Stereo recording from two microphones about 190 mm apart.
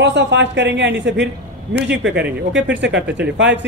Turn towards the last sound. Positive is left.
turn(degrees=-65)  # may be behind; listen again after turning